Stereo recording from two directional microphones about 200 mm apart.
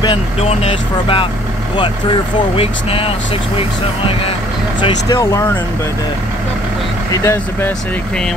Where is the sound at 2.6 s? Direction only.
30° left (ahead or behind).